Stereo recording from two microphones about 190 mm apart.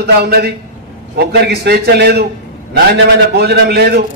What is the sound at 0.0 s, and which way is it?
A man's voice, 55° right (ahead or behind).